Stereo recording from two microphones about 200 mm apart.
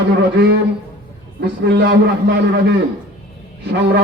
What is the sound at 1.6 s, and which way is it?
A man's voice, 55° right (ahead or behind).